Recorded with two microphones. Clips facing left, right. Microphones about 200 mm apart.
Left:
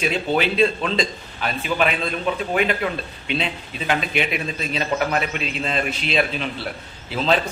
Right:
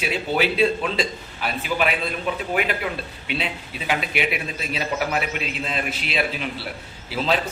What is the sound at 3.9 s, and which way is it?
A man's voice, 10° right (ahead or behind).